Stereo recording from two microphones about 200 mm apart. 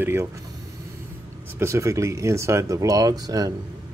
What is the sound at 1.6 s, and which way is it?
Speech, 15° right (ahead or behind).